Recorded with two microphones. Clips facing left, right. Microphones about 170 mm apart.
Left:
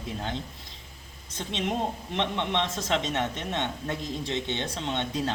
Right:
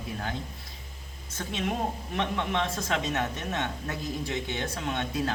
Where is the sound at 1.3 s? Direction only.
20° left (ahead or behind).